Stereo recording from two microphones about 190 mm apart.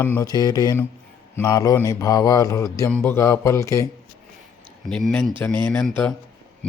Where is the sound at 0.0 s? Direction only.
15° left (ahead or behind).